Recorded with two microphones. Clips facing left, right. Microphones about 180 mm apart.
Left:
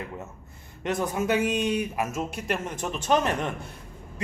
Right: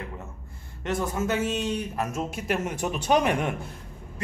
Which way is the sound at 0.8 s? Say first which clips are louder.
Left 1 dB; 20° left (ahead or behind).